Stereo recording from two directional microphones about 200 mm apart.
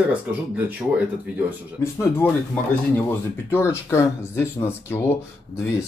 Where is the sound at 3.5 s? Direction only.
10° left (ahead or behind).